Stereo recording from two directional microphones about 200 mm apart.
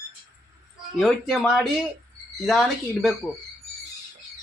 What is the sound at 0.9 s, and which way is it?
Speech, centre (ahead or behind).